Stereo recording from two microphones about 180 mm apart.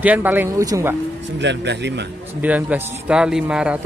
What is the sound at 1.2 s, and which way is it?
Speech, 80° right.